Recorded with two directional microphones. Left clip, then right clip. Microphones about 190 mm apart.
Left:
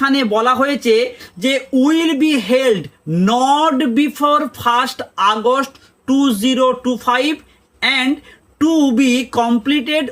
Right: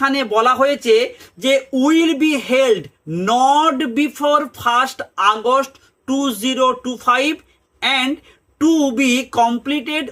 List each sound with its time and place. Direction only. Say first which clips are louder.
0.0 s a woman's voice: left 1 dB; 20° right (ahead or behind)